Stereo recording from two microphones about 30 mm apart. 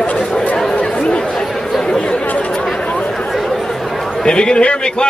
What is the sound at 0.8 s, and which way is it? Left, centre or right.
Chatter, left.